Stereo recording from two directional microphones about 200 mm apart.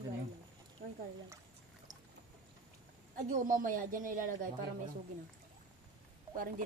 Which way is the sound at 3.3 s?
40° right (ahead or behind).